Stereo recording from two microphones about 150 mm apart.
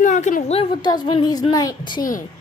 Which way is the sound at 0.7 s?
30° left (ahead or behind).